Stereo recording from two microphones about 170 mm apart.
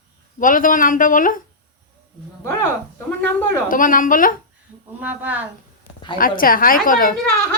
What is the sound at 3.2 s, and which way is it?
Speech, 10° left (ahead or behind).